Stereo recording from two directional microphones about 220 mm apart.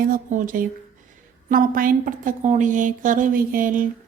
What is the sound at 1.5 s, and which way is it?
A woman's voice, 40° right (ahead or behind).